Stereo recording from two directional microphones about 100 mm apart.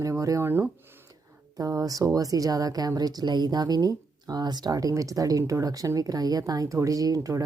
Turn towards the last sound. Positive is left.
turn(degrees=-35)  # may be behind; listen again after turning